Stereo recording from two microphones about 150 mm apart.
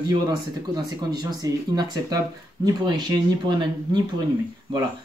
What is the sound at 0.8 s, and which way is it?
Speech, 25° right (ahead or behind).